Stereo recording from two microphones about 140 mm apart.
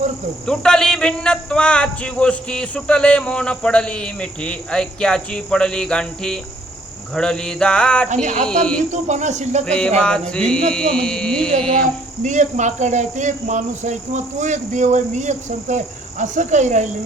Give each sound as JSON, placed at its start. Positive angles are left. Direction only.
{"t": 0.4, "sound": "a man's voice", "side_deg": 5}
{"t": 8.1, "sound": "speech", "side_deg": -65}
{"t": 9.6, "sound": "a man's voice", "side_deg": 5}
{"t": 12.2, "sound": "speech", "side_deg": -60}